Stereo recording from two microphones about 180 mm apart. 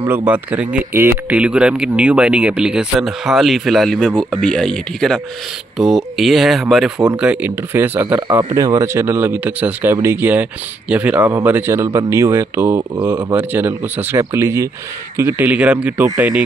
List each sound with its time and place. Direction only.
0.0 s speech: 10° right (ahead or behind)
8.2 s speech: 25° right (ahead or behind); by 16.4 s 10° right (ahead or behind)